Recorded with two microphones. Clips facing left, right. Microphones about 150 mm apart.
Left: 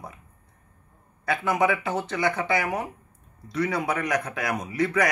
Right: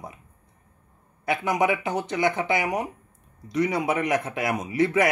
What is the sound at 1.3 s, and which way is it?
A man's voice, 20° right (ahead or behind).